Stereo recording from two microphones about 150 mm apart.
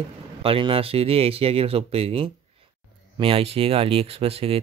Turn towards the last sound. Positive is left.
turn(degrees=-40)  # may be behind; listen again after turning